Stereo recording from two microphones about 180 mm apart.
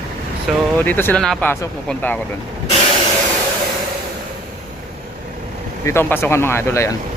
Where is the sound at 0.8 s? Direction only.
10° left (ahead or behind).